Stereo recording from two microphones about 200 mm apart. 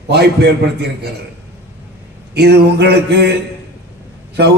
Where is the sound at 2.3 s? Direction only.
55° right (ahead or behind).